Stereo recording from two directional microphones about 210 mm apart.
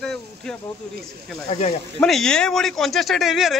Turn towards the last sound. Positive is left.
turn(degrees=0)  # may be behind; listen again after turning